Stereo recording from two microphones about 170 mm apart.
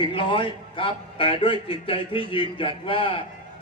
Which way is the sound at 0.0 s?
30° left (ahead or behind).